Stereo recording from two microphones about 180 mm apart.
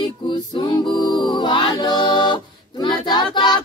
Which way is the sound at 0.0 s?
25° left (ahead or behind).